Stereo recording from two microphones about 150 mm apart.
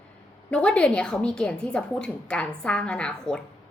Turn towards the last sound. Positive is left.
turn(degrees=5)  # may be behind; listen again after turning